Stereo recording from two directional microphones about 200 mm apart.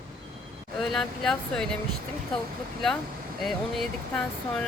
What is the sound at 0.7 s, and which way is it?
Speech, centre (ahead or behind).